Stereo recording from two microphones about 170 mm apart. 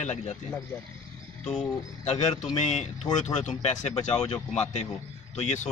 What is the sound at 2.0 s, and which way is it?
Speech, 40° left (ahead or behind).